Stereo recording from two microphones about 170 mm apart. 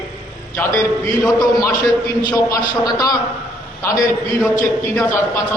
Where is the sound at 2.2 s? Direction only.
25° left (ahead or behind).